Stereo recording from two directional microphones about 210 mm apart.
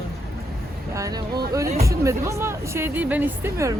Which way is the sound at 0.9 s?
15° right (ahead or behind).